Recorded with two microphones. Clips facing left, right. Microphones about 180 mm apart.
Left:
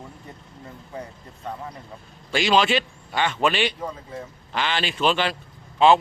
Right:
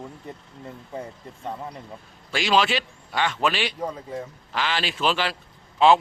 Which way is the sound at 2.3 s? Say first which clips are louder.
Left 2 dB; centre (ahead or behind).